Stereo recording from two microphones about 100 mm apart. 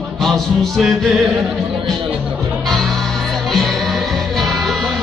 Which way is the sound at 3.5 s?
Centre (ahead or behind).